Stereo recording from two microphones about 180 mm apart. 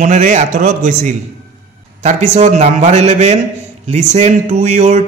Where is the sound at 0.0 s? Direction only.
45° right (ahead or behind).